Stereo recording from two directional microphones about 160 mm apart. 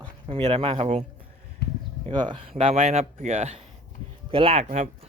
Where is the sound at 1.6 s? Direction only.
85° left.